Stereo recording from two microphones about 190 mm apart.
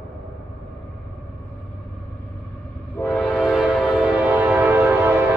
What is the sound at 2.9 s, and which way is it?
Train, 5° left (ahead or behind).